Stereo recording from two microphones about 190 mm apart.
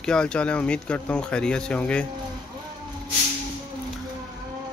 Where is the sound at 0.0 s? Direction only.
5° left (ahead or behind).